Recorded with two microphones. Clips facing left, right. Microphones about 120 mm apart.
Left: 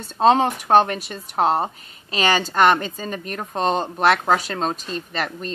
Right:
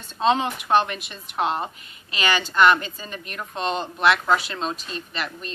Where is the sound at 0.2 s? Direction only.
45° left (ahead or behind).